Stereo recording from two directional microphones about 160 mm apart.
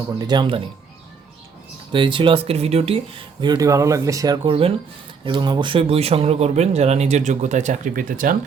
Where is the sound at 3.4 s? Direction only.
25° right (ahead or behind).